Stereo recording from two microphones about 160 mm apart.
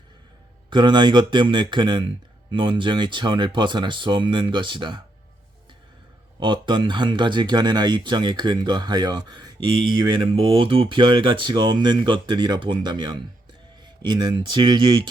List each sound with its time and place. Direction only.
0.7 s speech: 30° right (ahead or behind)
6.4 s speech: 30° right (ahead or behind)